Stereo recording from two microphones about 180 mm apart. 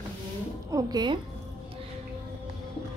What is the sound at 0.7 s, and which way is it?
Speech, 25° right (ahead or behind).